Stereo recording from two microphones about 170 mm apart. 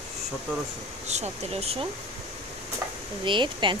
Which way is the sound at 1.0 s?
40° right (ahead or behind).